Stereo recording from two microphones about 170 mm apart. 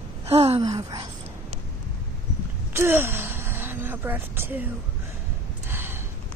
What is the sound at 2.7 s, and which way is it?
Gasp, 15° right (ahead or behind).